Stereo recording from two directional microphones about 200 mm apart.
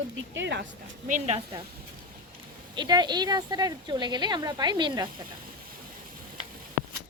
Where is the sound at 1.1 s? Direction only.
35° right (ahead or behind).